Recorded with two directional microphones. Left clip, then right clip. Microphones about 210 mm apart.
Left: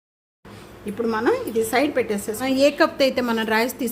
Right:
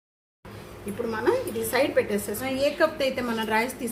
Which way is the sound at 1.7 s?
45° left (ahead or behind).